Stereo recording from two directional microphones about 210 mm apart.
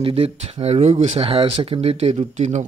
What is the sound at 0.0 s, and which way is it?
Speech, 30° right (ahead or behind).